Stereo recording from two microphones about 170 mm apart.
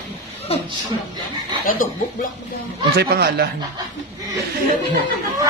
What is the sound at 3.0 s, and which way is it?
Speech, 70° right (ahead or behind).